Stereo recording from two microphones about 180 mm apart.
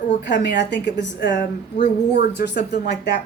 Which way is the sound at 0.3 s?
75° left (ahead or behind).